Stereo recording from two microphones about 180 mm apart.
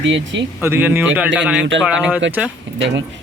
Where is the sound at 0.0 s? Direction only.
85° right.